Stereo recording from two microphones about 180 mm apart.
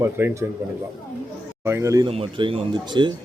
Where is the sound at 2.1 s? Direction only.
30° right (ahead or behind).